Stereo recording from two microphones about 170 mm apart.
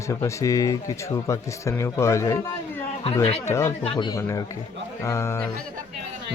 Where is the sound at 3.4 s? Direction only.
15° left (ahead or behind).